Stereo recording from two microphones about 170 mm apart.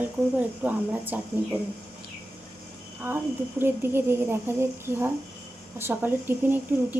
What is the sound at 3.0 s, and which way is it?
A woman's voice, 10° right (ahead or behind).